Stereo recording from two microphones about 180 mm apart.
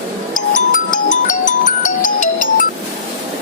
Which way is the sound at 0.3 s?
50° left (ahead or behind).